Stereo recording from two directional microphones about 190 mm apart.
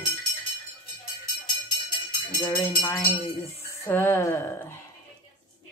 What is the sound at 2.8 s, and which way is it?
A woman's voice, centre (ahead or behind).